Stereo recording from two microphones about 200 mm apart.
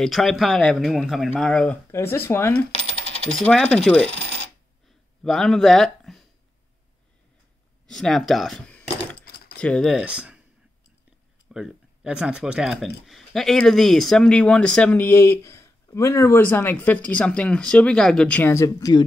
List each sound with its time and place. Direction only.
0.0 s speech: centre (ahead or behind)
2.7 s coin: 30° right (ahead or behind)
3.3 s speech: 5° left (ahead or behind)
4.8 s a sound: centre (ahead or behind)
7.8 s speech: 5° left (ahead or behind)
9.2 s keys jangling: 50° left (ahead or behind)
9.6 s speech: 5° left (ahead or behind)
11.5 s speech: 5° right (ahead or behind); by 19.0 s 20° left (ahead or behind)